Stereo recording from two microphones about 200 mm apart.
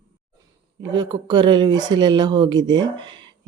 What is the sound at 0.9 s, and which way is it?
Speech, 25° right (ahead or behind).